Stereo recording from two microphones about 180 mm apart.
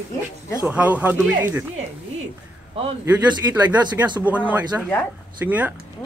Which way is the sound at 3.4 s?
15° right (ahead or behind).